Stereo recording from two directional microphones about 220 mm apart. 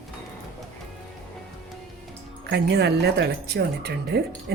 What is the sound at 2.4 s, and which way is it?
A woman's voice, 50° right (ahead or behind).